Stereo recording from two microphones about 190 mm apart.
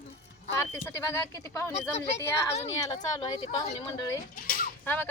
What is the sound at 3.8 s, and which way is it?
Speech, 20° left (ahead or behind).